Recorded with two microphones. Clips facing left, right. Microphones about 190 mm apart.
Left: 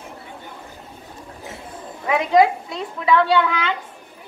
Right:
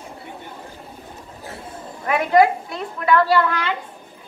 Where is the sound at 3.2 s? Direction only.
Centre (ahead or behind).